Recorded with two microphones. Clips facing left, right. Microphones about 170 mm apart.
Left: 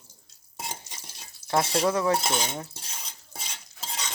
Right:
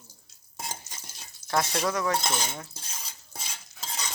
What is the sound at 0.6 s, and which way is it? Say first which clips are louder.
Stir: left 1 dB; centre (ahead or behind).